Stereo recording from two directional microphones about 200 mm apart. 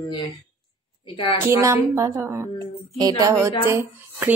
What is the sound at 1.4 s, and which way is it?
A woman's voice, 15° right (ahead or behind).